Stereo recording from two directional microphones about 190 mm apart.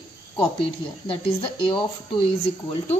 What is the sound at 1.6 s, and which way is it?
Speech, 25° left (ahead or behind).